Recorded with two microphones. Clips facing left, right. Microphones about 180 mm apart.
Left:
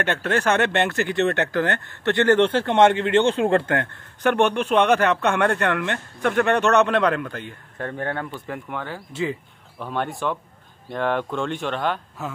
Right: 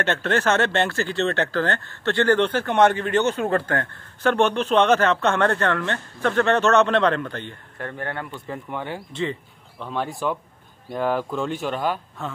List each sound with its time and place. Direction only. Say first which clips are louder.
0.0 s speech: even; 10° left (ahead or behind)
8.7 s speech: right 3 dB; 20° right (ahead or behind)
9.1 s speech: left 3 dB; 5° left (ahead or behind)
12.2 s speech: even; 5° left (ahead or behind)